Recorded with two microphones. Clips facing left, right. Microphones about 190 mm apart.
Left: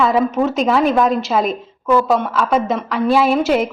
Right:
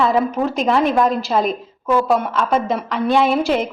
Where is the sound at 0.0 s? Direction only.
Centre (ahead or behind).